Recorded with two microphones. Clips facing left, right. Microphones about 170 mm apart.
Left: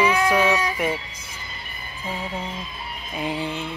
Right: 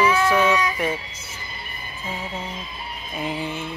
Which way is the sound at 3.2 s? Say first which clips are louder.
Left 1 dB; 15° left (ahead or behind).